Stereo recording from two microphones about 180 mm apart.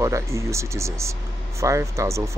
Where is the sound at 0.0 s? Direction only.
15° right (ahead or behind).